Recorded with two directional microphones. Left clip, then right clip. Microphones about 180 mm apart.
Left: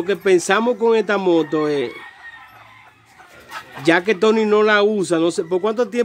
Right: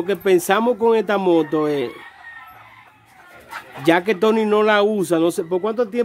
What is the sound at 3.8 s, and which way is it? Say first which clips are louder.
Speech: left 1 dB; centre (ahead or behind).